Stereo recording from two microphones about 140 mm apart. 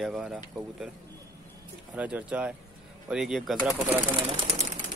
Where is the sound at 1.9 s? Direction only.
10° right (ahead or behind).